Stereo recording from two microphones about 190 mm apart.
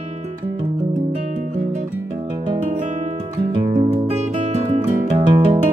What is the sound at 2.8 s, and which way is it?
Music, 40° right (ahead or behind).